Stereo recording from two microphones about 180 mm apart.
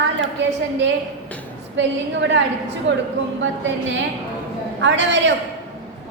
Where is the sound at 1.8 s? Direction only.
90° right.